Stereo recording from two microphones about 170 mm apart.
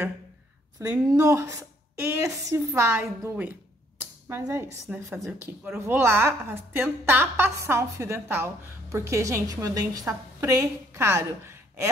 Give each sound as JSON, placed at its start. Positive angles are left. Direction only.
{"t": 0.8, "sound": "a woman's voice", "side_deg": -15}
{"t": 4.0, "sound": "a sound", "side_deg": -15}
{"t": 4.9, "sound": "a woman's voice", "side_deg": -15}